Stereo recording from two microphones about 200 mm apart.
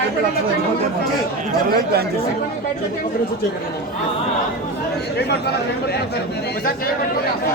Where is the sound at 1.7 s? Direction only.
50° right (ahead or behind).